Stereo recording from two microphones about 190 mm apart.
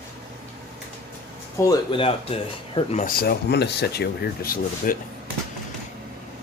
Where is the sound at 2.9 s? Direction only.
50° left (ahead or behind).